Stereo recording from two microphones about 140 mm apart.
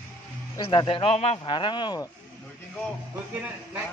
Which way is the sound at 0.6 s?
40° left (ahead or behind).